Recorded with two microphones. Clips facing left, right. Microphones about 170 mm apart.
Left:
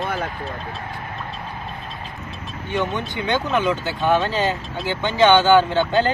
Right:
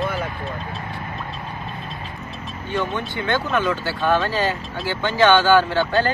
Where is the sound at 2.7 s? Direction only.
20° left (ahead or behind).